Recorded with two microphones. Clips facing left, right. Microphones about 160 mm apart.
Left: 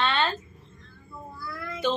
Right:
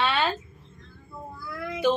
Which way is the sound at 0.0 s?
10° right (ahead or behind).